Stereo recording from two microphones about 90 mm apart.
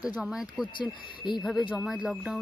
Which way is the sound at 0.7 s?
60° left (ahead or behind).